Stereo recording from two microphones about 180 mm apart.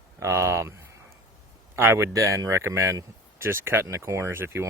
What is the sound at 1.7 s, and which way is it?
Speech, 15° right (ahead or behind).